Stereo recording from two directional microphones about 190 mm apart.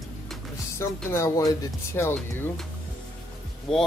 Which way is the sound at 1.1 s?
15° left (ahead or behind).